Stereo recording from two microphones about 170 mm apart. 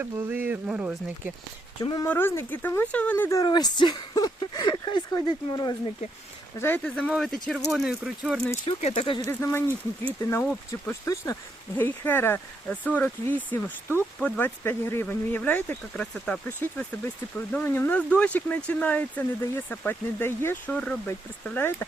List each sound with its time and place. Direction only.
0.0 s speech: 10° right (ahead or behind)
1.8 s speech: 25° left (ahead or behind)
2.0 s speech: 10° left (ahead or behind)
6.6 s speech: 10° left (ahead or behind)
8.6 s speech: 35° left (ahead or behind)
9.2 s speech: 15° left (ahead or behind)
10.7 s speech: 15° left (ahead or behind)